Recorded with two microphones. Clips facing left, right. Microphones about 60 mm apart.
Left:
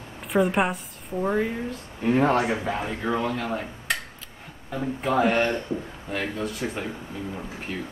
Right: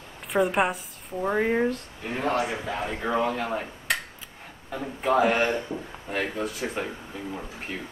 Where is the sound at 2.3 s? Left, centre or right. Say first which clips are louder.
Left 4 dB; left.